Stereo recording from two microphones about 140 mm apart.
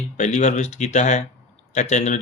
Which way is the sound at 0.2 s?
55° left (ahead or behind).